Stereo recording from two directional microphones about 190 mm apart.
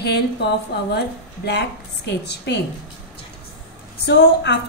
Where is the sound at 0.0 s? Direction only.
60° left (ahead or behind).